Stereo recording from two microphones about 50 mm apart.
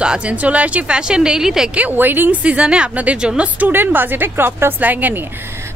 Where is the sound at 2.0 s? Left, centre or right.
Right.